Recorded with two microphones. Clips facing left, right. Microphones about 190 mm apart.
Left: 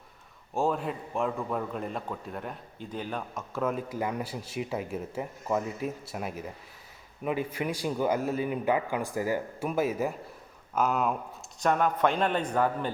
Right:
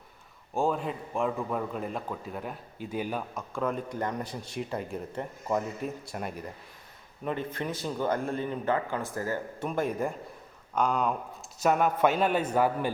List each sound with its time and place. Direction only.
0.5 s speech: centre (ahead or behind)
3.5 s a man's voice: 5° left (ahead or behind)
11.6 s a man's voice: 10° right (ahead or behind)